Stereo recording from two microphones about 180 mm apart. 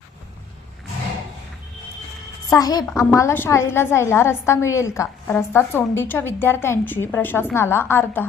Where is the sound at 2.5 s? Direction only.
20° left (ahead or behind).